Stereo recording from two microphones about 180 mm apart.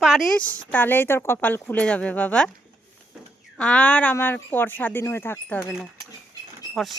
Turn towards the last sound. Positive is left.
turn(degrees=0)  # may be behind; listen again after turning